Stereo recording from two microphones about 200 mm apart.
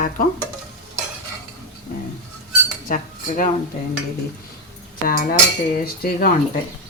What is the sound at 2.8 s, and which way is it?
Speech, 40° left (ahead or behind).